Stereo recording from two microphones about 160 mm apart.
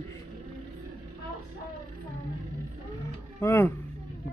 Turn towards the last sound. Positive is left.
turn(degrees=15)  # may be behind; listen again after turning